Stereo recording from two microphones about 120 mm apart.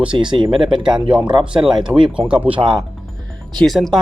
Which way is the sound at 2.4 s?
45° right (ahead or behind).